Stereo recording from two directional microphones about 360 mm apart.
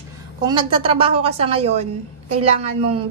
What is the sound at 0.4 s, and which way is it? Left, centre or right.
A woman's voice, centre.